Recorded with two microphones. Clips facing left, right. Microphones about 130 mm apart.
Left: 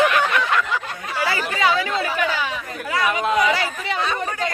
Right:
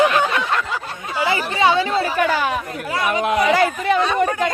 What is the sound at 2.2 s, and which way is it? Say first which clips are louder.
Speech: right 5 dB; 50° right (ahead or behind).